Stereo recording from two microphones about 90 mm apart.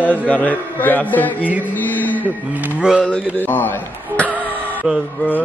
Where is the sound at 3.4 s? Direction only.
20° left (ahead or behind).